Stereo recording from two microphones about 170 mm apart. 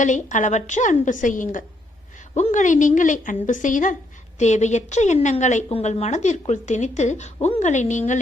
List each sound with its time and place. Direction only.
0.0 s a woman's voice: 45° left (ahead or behind)